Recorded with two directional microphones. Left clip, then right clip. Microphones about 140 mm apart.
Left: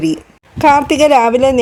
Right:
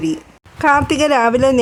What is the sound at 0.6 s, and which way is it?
Speech, 10° left (ahead or behind).